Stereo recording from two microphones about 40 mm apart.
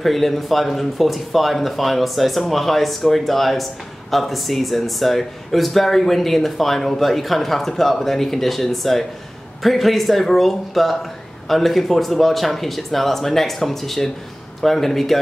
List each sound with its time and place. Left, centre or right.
0.0 s a man's voice: centre